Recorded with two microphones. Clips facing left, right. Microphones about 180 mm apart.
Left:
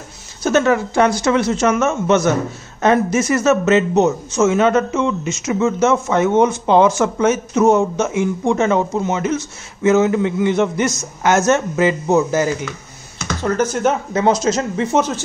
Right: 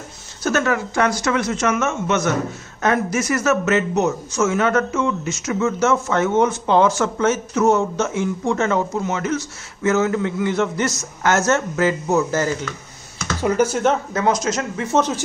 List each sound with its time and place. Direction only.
0.4 s a man's voice: 20° left (ahead or behind)
13.4 s speech: 10° right (ahead or behind)
14.1 s a man's voice: 30° left (ahead or behind)
14.9 s a man's voice: 10° left (ahead or behind)